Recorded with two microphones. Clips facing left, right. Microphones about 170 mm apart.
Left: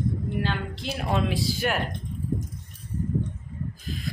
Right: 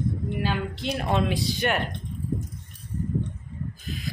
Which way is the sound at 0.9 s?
5° left (ahead or behind).